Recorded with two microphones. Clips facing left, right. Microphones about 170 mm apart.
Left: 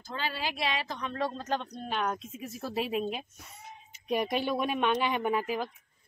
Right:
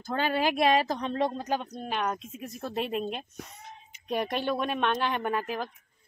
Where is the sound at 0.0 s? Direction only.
55° right (ahead or behind); by 1.1 s 40° right (ahead or behind).